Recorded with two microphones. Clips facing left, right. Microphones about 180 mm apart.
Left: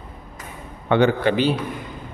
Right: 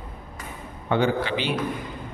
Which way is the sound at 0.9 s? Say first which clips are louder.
Left 5 dB; 60° left (ahead or behind).